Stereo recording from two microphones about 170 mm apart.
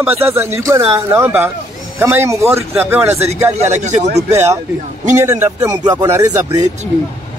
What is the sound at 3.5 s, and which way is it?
Speech, 40° right (ahead or behind).